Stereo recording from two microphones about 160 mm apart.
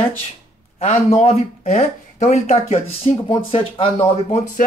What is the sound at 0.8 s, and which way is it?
Speech, 45° left (ahead or behind).